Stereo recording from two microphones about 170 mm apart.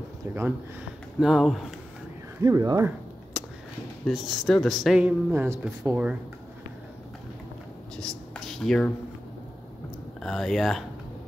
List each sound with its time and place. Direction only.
1.2 s speech: centre (ahead or behind)
2.4 s speech: 20° right (ahead or behind)
4.0 s speech: centre (ahead or behind)
7.9 s speech: 5° left (ahead or behind)
10.2 s speech: centre (ahead or behind)